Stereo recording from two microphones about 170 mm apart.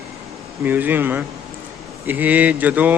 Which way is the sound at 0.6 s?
10° right (ahead or behind).